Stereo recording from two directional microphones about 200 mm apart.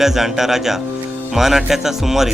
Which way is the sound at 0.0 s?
Centre (ahead or behind).